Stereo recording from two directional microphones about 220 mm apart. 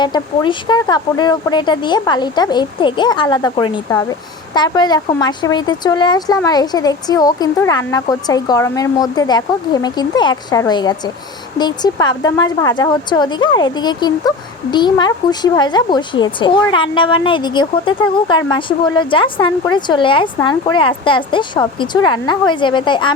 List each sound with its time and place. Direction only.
0.0 s speech: 20° left (ahead or behind)